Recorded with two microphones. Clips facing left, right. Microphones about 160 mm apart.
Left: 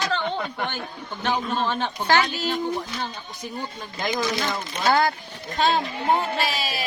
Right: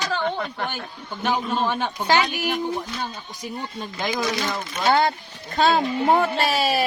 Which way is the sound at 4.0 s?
Centre (ahead or behind).